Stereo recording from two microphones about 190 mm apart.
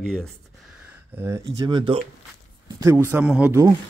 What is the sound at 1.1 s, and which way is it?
Speech, 15° right (ahead or behind).